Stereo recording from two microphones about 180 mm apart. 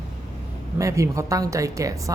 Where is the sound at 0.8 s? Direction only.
15° right (ahead or behind).